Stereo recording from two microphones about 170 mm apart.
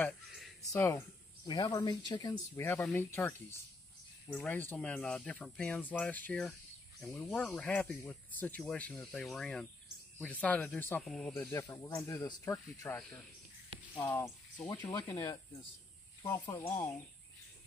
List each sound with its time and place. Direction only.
0.7 s speech: 15° left (ahead or behind)
11.5 s speech: 20° left (ahead or behind)
14.8 s speech: 15° left (ahead or behind)
16.4 s speech: 20° left (ahead or behind)